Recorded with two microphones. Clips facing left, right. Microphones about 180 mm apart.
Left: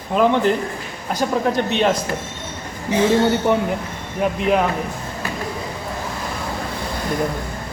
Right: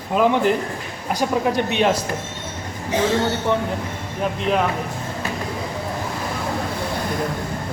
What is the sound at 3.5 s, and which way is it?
Speech, 15° left (ahead or behind).